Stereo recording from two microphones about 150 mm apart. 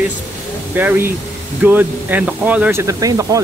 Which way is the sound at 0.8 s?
15° right (ahead or behind).